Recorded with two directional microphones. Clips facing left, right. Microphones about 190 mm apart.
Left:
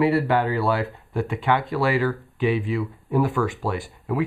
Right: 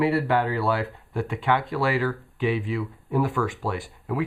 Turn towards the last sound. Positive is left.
turn(degrees=20)  # may be behind; listen again after turning